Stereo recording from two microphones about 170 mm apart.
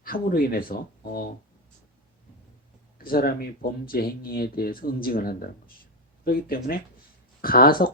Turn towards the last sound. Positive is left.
turn(degrees=60)  # may be behind; listen again after turning